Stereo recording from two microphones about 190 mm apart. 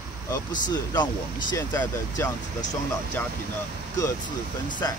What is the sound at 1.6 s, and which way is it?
Speech, 10° left (ahead or behind).